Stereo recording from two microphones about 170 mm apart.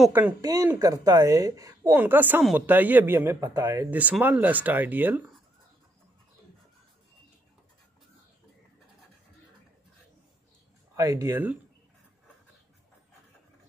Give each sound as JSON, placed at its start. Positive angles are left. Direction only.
{"t": 0.4, "sound": "speech", "side_deg": -20}
{"t": 11.0, "sound": "speech", "side_deg": -20}